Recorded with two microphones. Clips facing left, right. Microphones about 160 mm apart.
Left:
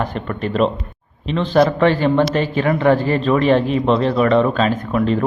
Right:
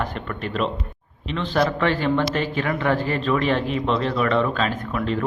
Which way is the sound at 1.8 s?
25° left (ahead or behind).